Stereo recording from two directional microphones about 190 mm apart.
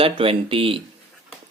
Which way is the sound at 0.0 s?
30° right (ahead or behind).